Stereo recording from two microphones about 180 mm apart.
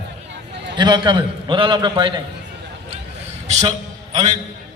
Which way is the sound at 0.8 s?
25° right (ahead or behind).